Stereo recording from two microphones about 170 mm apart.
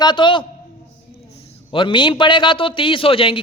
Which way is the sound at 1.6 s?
30° left (ahead or behind).